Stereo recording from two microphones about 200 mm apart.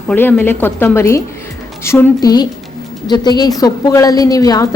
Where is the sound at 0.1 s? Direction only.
10° left (ahead or behind).